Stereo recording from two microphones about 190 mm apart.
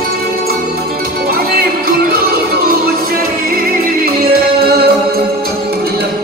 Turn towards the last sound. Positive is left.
turn(degrees=-50)  # may be behind; listen again after turning